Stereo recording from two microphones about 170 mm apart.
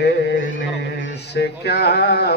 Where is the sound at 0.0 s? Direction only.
90° left.